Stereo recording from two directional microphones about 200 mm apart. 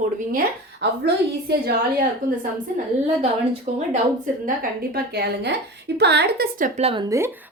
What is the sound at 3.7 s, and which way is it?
Speech, 35° right (ahead or behind).